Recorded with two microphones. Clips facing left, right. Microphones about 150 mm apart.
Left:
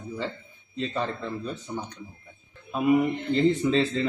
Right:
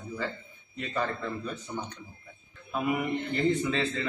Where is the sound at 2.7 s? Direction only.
25° left (ahead or behind).